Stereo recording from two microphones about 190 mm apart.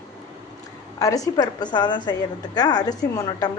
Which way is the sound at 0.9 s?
20° left (ahead or behind).